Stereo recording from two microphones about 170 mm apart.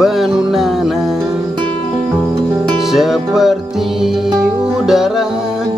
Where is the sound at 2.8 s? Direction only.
Centre (ahead or behind).